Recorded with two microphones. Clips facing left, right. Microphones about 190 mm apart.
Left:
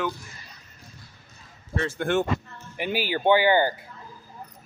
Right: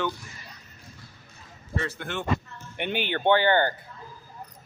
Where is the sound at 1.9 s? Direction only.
50° left (ahead or behind).